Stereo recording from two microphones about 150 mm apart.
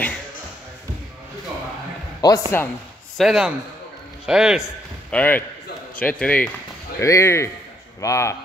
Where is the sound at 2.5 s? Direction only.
15° left (ahead or behind).